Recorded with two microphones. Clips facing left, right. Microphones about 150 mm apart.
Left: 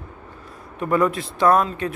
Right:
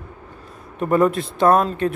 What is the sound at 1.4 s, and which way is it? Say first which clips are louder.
Speech: right 1 dB; 25° right (ahead or behind).